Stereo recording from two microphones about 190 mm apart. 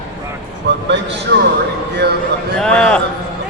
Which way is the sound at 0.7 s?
70° right (ahead or behind).